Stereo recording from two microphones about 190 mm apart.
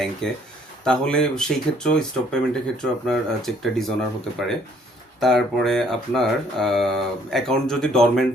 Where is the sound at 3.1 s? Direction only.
Centre (ahead or behind).